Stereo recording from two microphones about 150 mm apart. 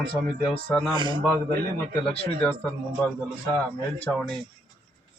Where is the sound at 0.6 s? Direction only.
10° left (ahead or behind).